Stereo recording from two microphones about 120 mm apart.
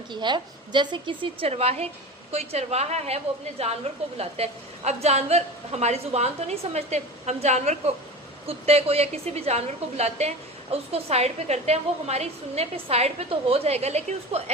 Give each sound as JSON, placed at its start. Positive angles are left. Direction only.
{"t": 0.1, "sound": "a woman's voice", "side_deg": -40}
{"t": 8.4, "sound": "a woman's voice", "side_deg": -60}